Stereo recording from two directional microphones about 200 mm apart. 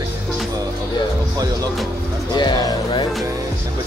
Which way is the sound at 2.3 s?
20° left (ahead or behind).